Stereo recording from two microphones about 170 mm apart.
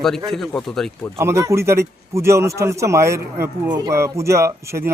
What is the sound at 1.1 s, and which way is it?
Speech, 15° right (ahead or behind).